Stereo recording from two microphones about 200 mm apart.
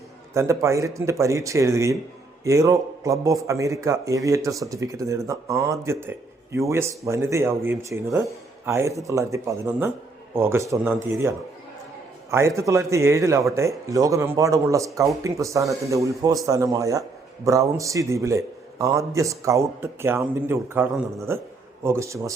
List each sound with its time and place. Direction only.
0.3 s a man's voice: 15° right (ahead or behind)
12.3 s a man's voice: 15° right (ahead or behind)